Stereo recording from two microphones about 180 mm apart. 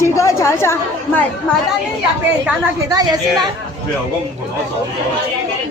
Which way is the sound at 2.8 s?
20° right (ahead or behind).